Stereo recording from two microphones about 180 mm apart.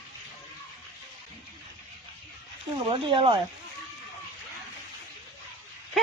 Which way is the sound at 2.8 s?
30° right (ahead or behind).